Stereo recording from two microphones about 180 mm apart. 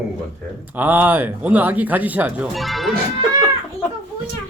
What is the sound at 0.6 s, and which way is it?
Speech, 10° right (ahead or behind).